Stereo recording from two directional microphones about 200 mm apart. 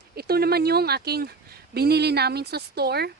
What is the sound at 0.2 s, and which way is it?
Speech, 50° right (ahead or behind).